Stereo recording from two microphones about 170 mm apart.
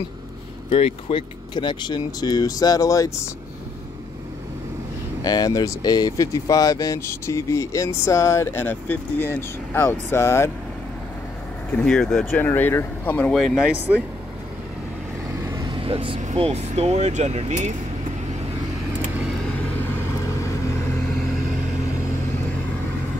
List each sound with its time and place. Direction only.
0.7 s speech: 35° left (ahead or behind); by 3.1 s 20° left (ahead or behind)
5.2 s speech: 20° left (ahead or behind)
11.7 s speech: 5° left (ahead or behind)
15.5 s vehicle: 20° right (ahead or behind)
15.8 s speech: 30° right (ahead or behind)
19.8 s vehicle: 20° left (ahead or behind)